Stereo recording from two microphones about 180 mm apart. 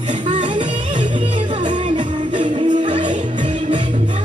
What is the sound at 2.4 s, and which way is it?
Music, 45° right (ahead or behind).